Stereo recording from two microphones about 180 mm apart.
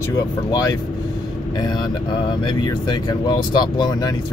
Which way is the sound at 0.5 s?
20° left (ahead or behind).